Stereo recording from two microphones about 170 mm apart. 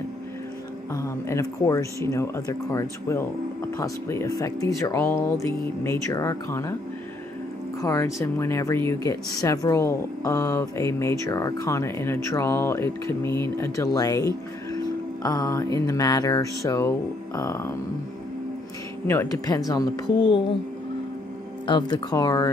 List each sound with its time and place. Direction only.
0.9 s speech: 15° left (ahead or behind)
7.8 s speech: 20° left (ahead or behind)
19.0 s speech: 15° left (ahead or behind)
21.6 s speech: 25° left (ahead or behind)